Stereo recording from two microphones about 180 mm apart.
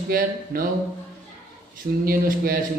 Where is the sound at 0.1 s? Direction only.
55° right (ahead or behind).